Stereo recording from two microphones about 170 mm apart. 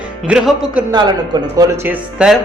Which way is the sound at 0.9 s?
25° right (ahead or behind).